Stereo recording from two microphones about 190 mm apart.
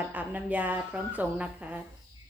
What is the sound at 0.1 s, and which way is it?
Speech, 10° right (ahead or behind).